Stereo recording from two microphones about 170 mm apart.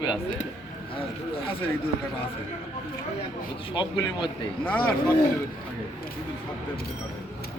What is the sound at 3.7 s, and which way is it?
Speech, 25° left (ahead or behind).